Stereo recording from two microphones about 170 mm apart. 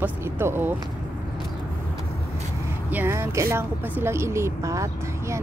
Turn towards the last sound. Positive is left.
turn(degrees=-15)  # may be behind; listen again after turning